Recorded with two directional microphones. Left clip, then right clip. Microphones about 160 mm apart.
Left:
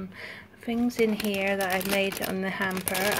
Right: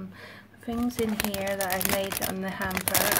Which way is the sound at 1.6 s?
15° left (ahead or behind).